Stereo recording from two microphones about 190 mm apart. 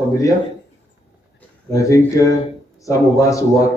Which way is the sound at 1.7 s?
15° left (ahead or behind).